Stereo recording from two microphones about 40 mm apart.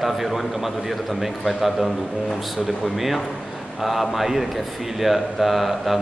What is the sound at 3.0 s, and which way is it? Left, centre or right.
A man's voice, centre.